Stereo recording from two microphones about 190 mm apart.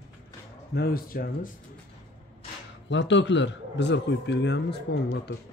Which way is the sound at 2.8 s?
70° left (ahead or behind).